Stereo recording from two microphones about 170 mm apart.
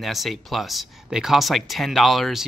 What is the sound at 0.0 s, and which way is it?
Speech, centre (ahead or behind).